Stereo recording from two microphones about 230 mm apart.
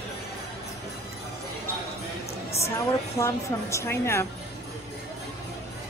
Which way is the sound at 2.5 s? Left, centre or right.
Left.